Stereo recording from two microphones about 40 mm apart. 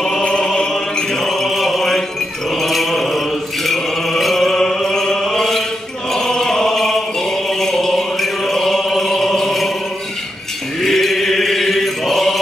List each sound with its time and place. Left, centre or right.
0.2 s music: left
0.5 s mantra: centre
6.1 s chant: centre
10.8 s mantra: centre